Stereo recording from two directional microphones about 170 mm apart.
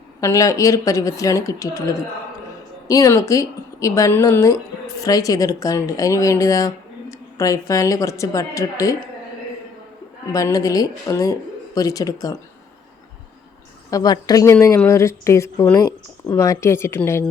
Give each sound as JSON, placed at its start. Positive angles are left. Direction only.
{"t": 0.2, "sound": "speech", "side_deg": 15}
{"t": 10.3, "sound": "speech", "side_deg": 20}
{"t": 13.9, "sound": "speech", "side_deg": 25}